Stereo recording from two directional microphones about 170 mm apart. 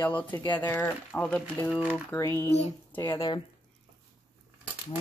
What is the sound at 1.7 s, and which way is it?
Speech, 5° right (ahead or behind).